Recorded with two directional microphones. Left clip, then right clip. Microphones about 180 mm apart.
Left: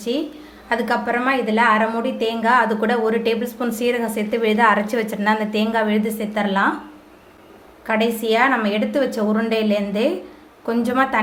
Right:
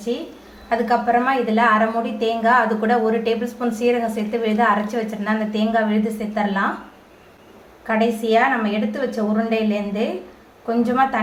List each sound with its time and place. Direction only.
0.7 s a woman's voice: 40° left (ahead or behind)
7.9 s a woman's voice: 40° left (ahead or behind)